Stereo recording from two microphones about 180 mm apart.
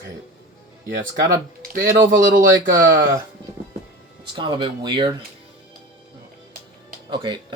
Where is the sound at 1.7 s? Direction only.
80° right.